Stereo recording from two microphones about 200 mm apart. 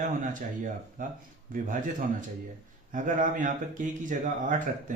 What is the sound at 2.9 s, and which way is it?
Speech, 40° right (ahead or behind).